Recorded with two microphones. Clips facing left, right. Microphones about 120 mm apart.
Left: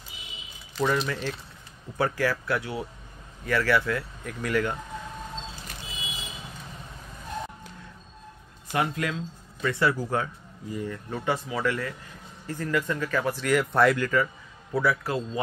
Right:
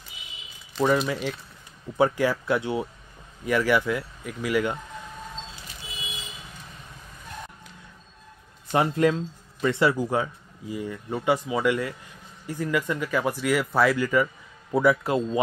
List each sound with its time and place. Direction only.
0.7 s speech: 15° right (ahead or behind)
8.7 s speech: 30° right (ahead or behind)
9.6 s speech: 20° right (ahead or behind)
14.7 s speech: 20° right (ahead or behind)